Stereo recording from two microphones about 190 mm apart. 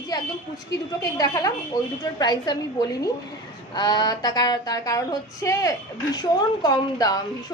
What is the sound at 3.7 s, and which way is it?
A woman's voice, 20° left (ahead or behind).